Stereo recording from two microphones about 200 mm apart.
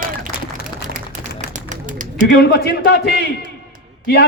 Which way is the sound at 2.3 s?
55° left (ahead or behind).